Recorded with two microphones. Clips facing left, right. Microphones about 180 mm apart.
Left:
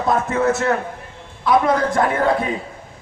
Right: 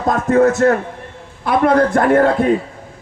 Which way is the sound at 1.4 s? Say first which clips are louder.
Right 3 dB; 60° right (ahead or behind).